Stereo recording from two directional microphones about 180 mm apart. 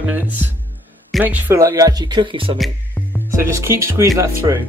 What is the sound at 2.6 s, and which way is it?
Music, 10° left (ahead or behind).